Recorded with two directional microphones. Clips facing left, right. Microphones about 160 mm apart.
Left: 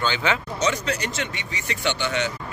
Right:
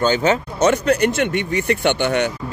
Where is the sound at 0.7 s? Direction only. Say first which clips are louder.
Right 11 dB; 55° right (ahead or behind).